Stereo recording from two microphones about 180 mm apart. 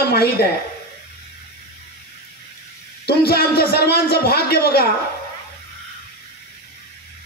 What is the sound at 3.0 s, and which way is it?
A man's voice, 60° left (ahead or behind).